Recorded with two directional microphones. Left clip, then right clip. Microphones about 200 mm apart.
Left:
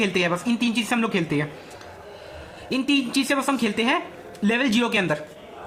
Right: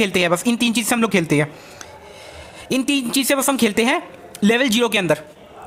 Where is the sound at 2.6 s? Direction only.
55° right (ahead or behind).